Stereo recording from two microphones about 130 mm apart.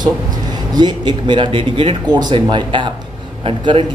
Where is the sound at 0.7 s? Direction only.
35° right (ahead or behind).